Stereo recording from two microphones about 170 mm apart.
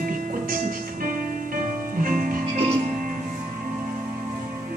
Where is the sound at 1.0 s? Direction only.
55° right (ahead or behind).